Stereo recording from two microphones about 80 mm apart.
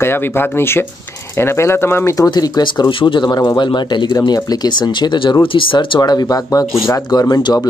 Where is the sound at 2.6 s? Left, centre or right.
Left.